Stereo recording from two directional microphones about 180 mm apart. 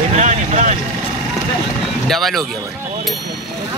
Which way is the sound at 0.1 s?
40° right (ahead or behind).